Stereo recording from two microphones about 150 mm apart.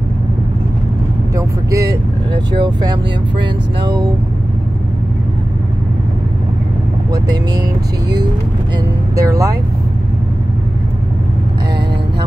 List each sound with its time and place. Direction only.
1.3 s speech: 20° right (ahead or behind)
7.1 s speech: 25° right (ahead or behind)
9.1 s speech: 20° right (ahead or behind)